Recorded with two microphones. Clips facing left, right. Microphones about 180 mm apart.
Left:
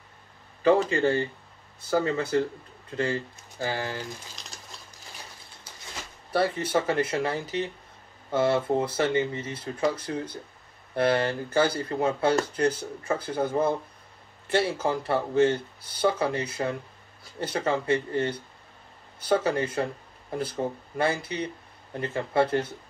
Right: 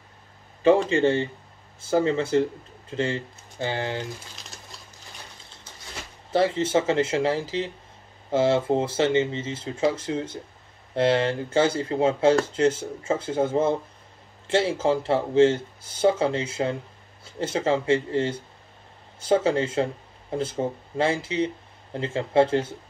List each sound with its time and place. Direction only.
0.8 s speech: 25° right (ahead or behind)
6.3 s speech: 25° right (ahead or behind)